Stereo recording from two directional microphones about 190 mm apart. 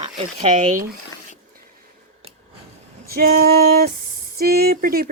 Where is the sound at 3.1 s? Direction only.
50° right (ahead or behind).